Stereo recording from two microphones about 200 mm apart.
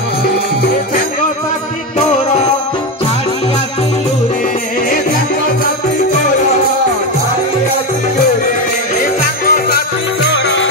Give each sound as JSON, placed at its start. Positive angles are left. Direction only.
{"t": 9.0, "sound": "jingle bell", "side_deg": 45}